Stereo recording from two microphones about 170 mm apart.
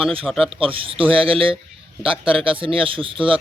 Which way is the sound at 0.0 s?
30° right (ahead or behind).